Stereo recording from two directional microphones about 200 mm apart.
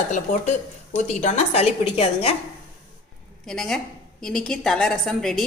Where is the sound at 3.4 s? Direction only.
Centre (ahead or behind).